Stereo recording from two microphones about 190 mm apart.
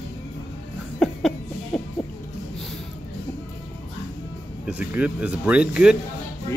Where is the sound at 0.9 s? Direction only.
Centre (ahead or behind).